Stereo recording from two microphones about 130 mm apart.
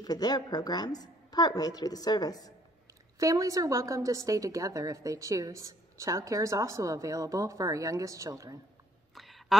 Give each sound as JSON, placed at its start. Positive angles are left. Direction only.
{"t": 0.0, "sound": "a woman's voice", "side_deg": 30}
{"t": 3.2, "sound": "a woman's voice", "side_deg": -25}
{"t": 9.1, "sound": "a sound", "side_deg": 0}